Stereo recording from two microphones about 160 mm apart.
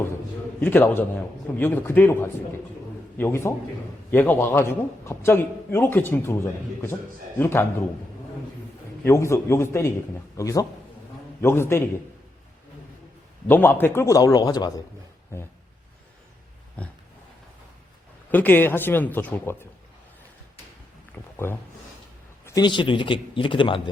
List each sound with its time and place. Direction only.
0.6 s a man's voice: 15° left (ahead or behind)
7.3 s a man's voice: 15° left (ahead or behind)
9.0 s a man's voice: 15° left (ahead or behind)
13.5 s a man's voice: 15° left (ahead or behind)
18.3 s a man's voice: 10° left (ahead or behind)
21.3 s speech: 15° left (ahead or behind)
22.4 s a man's voice: 25° left (ahead or behind)